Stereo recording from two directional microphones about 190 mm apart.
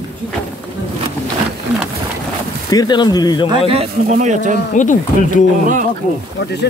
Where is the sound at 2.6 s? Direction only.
20° left (ahead or behind).